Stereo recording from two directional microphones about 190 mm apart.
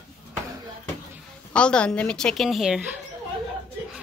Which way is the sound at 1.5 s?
5° left (ahead or behind).